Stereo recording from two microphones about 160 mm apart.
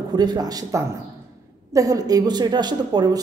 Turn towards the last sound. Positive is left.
turn(degrees=-25)  # may be behind; listen again after turning